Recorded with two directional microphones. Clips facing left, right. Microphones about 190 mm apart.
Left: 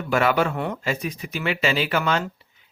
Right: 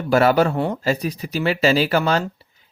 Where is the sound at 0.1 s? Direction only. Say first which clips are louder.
Right 5 dB; 40° right (ahead or behind).